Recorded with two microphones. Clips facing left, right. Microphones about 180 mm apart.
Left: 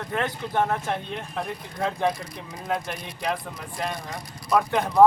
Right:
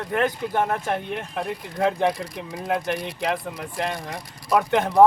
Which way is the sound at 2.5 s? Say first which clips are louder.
Right 4 dB; 80° right.